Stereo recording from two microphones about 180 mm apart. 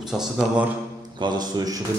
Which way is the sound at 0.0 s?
5° right (ahead or behind).